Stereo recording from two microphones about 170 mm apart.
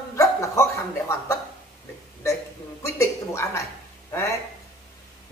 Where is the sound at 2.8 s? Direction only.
15° left (ahead or behind).